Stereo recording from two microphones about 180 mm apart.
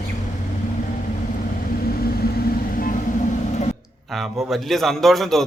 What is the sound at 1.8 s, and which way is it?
Vehicle, 55° left (ahead or behind).